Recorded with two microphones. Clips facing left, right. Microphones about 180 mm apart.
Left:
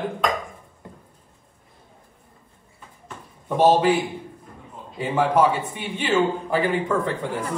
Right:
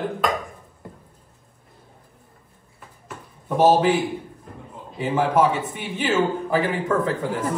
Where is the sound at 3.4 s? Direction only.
5° right (ahead or behind).